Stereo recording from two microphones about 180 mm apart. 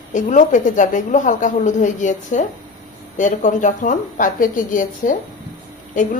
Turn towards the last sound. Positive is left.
turn(degrees=45)  # may be behind; listen again after turning